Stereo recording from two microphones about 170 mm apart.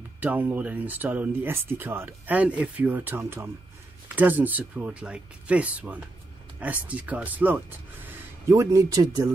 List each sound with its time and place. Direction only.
0.2 s speech: 10° right (ahead or behind)